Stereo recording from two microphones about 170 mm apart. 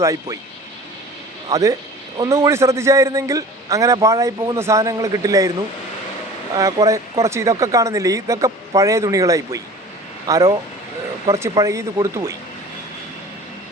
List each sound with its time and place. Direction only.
0.0 s speech: 15° right (ahead or behind)
1.5 s a man's voice: 20° right (ahead or behind)